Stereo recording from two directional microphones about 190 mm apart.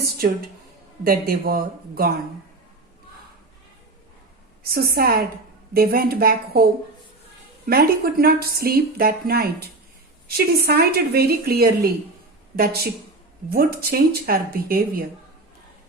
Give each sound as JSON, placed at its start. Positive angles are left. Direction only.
{"t": 0.2, "sound": "speech", "side_deg": -55}
{"t": 4.6, "sound": "speech", "side_deg": -55}
{"t": 7.7, "sound": "speech", "side_deg": -55}